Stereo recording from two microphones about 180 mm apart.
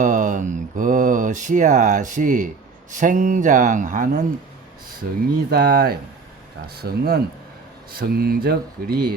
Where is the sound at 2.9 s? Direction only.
45° right (ahead or behind).